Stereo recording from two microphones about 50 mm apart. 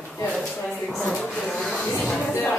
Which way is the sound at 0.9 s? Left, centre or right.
Centre.